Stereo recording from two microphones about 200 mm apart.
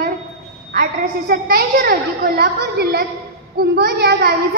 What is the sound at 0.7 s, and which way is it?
A woman's voice, 50° right (ahead or behind).